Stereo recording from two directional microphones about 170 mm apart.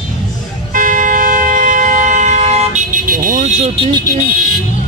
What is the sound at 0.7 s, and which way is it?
Vehicle, 50° right (ahead or behind).